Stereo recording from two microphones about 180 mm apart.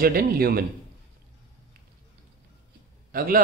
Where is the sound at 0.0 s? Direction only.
55° right (ahead or behind).